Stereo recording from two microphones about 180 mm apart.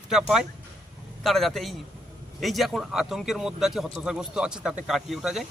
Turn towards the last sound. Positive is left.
turn(degrees=0)  # may be behind; listen again after turning